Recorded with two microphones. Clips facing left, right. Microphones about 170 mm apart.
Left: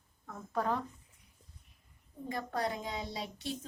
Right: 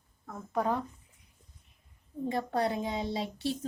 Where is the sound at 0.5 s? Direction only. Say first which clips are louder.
Right 3 dB; 15° right (ahead or behind).